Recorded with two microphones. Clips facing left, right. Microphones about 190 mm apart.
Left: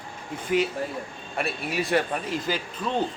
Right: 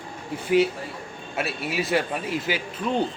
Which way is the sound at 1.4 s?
5° right (ahead or behind).